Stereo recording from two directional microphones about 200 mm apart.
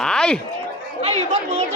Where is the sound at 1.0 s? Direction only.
30° right (ahead or behind).